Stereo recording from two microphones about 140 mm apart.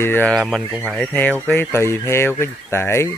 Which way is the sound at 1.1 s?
10° left (ahead or behind).